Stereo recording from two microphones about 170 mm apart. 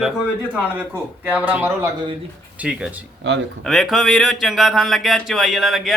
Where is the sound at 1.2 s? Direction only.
10° right (ahead or behind).